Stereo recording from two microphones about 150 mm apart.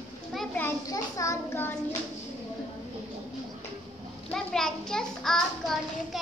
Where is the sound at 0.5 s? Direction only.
20° left (ahead or behind).